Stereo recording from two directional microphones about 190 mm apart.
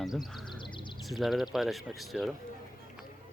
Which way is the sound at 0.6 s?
25° left (ahead or behind).